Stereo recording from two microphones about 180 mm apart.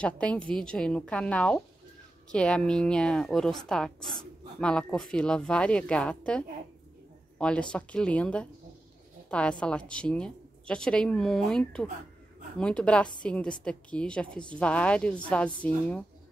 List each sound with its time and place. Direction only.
0.0 s a woman's voice: 5° left (ahead or behind)